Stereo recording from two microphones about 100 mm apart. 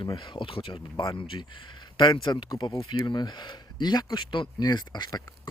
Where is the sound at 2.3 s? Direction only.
45° left (ahead or behind).